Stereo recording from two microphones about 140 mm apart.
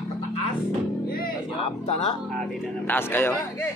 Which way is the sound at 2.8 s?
15° left (ahead or behind).